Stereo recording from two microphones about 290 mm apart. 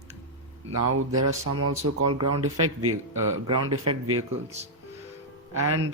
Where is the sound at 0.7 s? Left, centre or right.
Right.